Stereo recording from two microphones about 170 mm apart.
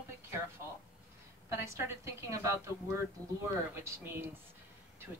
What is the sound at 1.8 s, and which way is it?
Speech, 15° right (ahead or behind).